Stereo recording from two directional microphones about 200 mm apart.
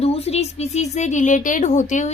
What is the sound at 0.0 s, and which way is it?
Speech, 30° left (ahead or behind).